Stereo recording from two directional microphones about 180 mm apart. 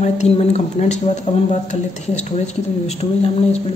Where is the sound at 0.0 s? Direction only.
35° left (ahead or behind).